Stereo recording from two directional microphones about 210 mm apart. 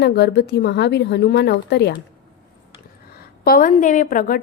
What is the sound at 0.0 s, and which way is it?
A woman's voice, 55° left (ahead or behind).